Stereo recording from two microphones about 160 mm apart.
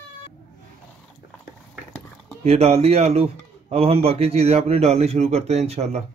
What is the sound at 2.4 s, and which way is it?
Speech, 45° right (ahead or behind).